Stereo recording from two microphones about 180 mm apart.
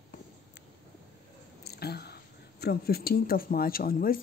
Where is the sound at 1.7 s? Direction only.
60° left (ahead or behind).